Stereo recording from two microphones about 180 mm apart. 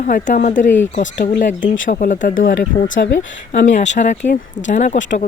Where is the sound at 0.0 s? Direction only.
45° left (ahead or behind).